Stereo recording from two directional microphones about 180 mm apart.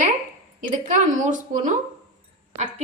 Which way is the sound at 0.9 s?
45° right (ahead or behind).